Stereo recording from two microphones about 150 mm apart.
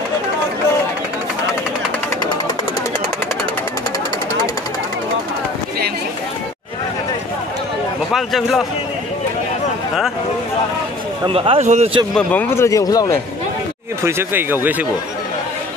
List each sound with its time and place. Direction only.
8.1 s a man's voice: centre (ahead or behind)
11.2 s speech: 40° right (ahead or behind)
11.6 s a man's voice: 50° right (ahead or behind)
12.2 s speech: 10° left (ahead or behind)
14.0 s speech: 15° right (ahead or behind)